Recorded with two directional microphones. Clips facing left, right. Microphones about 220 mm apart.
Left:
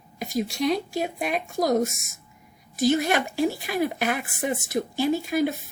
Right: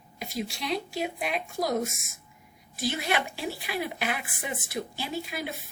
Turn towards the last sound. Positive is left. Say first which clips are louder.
# left 11 dB
turn(degrees=45)  # may be behind; listen again after turning